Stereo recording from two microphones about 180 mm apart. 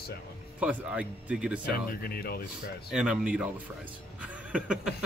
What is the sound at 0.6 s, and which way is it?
Speech, 5° right (ahead or behind).